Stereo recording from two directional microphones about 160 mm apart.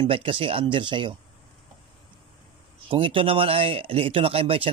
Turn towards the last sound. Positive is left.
turn(degrees=-35)  # may be behind; listen again after turning